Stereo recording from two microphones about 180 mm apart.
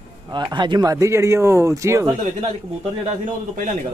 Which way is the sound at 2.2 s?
40° right (ahead or behind).